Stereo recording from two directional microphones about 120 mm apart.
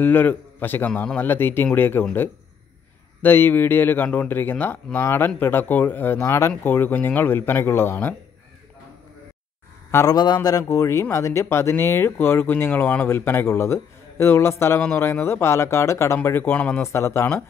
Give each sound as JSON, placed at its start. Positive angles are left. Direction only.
{"t": 0.0, "sound": "a man's voice", "side_deg": 15}
{"t": 3.2, "sound": "a man's voice", "side_deg": 15}
{"t": 9.8, "sound": "a sound", "side_deg": 20}
{"t": 10.1, "sound": "a man's voice", "side_deg": 35}